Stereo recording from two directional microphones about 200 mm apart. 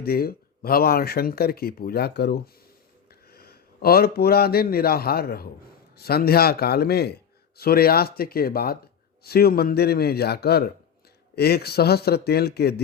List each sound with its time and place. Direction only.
0.0 s a man's voice: 50° left (ahead or behind)